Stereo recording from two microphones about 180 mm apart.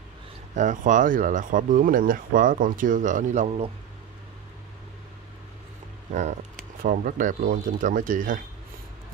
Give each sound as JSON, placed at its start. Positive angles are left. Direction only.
{"t": 0.6, "sound": "speech", "side_deg": -45}
{"t": 6.8, "sound": "speech", "side_deg": -50}